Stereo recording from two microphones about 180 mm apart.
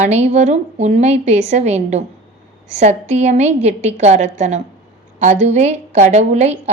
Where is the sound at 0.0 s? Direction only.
35° right (ahead or behind).